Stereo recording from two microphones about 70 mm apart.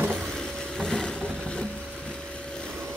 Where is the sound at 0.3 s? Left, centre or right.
Centre.